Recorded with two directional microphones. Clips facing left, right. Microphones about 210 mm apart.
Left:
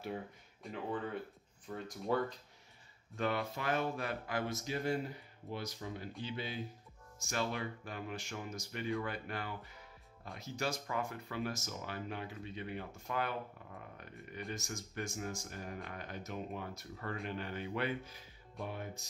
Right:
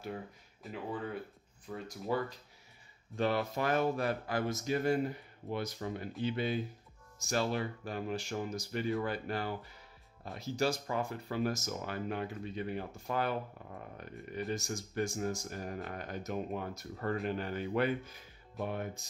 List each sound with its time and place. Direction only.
0.0 s speech: centre (ahead or behind)
3.2 s speech: 40° right (ahead or behind)
5.5 s speech: 55° right (ahead or behind)
7.2 s speech: 35° right (ahead or behind)
14.5 s speech: 35° right (ahead or behind)